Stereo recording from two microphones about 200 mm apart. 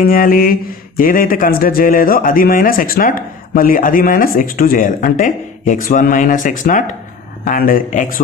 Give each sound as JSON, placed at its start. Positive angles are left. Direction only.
{"t": 0.0, "sound": "speech", "side_deg": 45}